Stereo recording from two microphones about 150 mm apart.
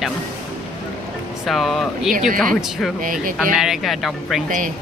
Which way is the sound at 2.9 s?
65° right (ahead or behind).